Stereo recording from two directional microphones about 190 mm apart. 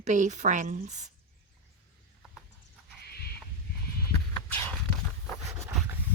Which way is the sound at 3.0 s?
55° left (ahead or behind).